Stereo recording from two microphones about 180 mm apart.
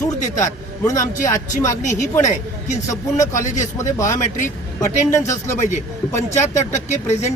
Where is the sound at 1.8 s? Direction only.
45° left (ahead or behind).